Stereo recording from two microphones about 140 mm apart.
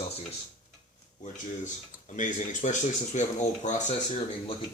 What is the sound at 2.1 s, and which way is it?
Speech, 65° left (ahead or behind).